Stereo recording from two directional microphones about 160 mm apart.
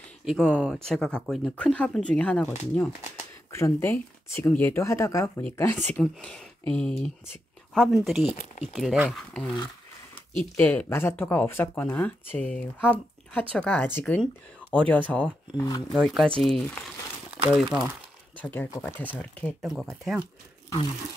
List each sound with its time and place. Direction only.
0.2 s speech: centre (ahead or behind)
3.5 s speech: 15° left (ahead or behind); by 8.2 s centre (ahead or behind)
8.2 s speech: 45° left (ahead or behind)
8.7 s speech: 5° right (ahead or behind)
10.6 s speech: 10° left (ahead or behind)
15.5 s speech: 25° left (ahead or behind)
15.9 s speech: centre (ahead or behind)
17.5 s speech: 5° right (ahead or behind)
18.4 s speech: 10° left (ahead or behind)